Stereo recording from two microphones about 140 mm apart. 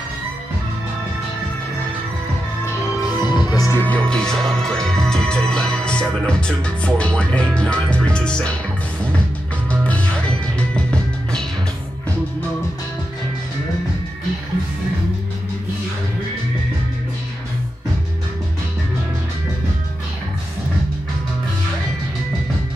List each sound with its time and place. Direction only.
2.6 s music: 30° left (ahead or behind)
3.8 s speech: 10° left (ahead or behind)
5.0 s music: 5° left (ahead or behind)
9.7 s music: 10° left (ahead or behind)